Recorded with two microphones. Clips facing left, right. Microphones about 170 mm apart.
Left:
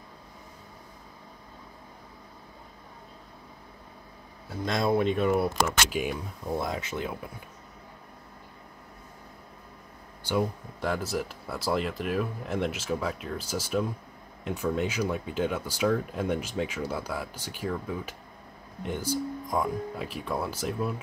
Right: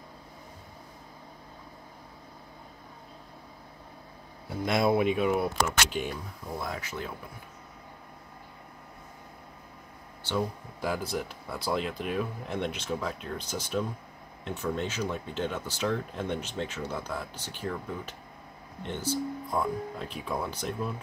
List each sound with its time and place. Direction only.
4.5 s speech: 10° right (ahead or behind); by 6.1 s 5° left (ahead or behind)
6.6 s speech: 20° left (ahead or behind)
10.8 s speech: centre (ahead or behind)